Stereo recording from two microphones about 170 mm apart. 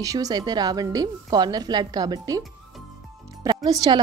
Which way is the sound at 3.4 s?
25° right (ahead or behind).